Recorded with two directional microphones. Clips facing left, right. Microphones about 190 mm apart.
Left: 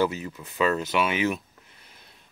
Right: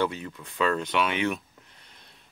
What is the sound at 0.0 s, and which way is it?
Speech, 5° left (ahead or behind).